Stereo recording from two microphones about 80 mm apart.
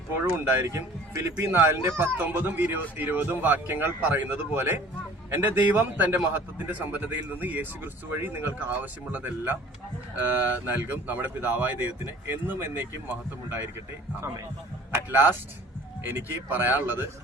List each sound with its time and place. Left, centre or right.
0.4 s speech: right
2.1 s speech: right
14.9 s speech: right